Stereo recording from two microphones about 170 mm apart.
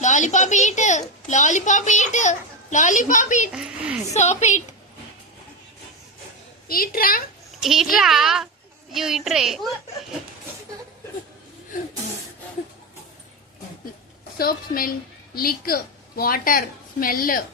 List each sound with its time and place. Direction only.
0.0 s a woman's voice: 45° left (ahead or behind)
3.5 s a child's voice: 5° right (ahead or behind)
4.1 s a woman's voice: 40° left (ahead or behind)
6.7 s a woman's voice: 60° left (ahead or behind)
7.6 s a child's voice: centre (ahead or behind)
14.3 s a woman's voice: 60° left (ahead or behind)